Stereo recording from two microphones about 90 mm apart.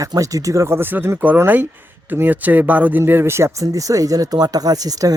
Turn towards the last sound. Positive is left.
turn(degrees=-45)  # may be behind; listen again after turning